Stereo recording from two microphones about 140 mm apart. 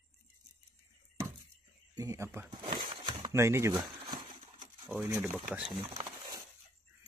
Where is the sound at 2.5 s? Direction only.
35° right (ahead or behind).